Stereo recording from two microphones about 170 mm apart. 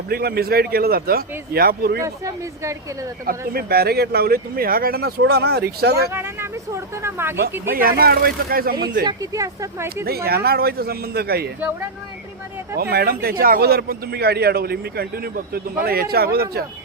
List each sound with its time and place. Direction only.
0.1 s speech: 65° right (ahead or behind)
2.0 s speech: 20° right (ahead or behind)
3.2 s speech: 65° right (ahead or behind)
6.1 s speech: 15° right (ahead or behind)
7.7 s speech: 60° right (ahead or behind)
9.0 s speech: 20° right (ahead or behind)
10.2 s speech: 65° right (ahead or behind)
12.8 s speech: 65° right (ahead or behind)